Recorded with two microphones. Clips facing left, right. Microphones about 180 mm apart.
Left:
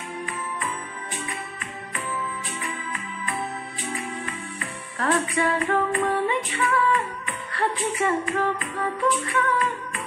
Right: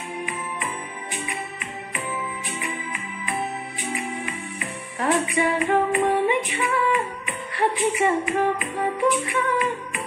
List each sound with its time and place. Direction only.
0.2 s music: 15° right (ahead or behind)
2.6 s music: 15° right (ahead or behind)